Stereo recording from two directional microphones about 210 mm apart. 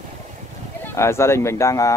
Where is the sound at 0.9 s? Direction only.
10° left (ahead or behind).